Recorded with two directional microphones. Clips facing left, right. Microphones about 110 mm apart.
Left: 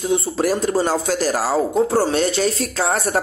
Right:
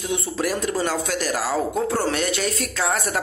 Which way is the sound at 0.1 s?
35° left (ahead or behind).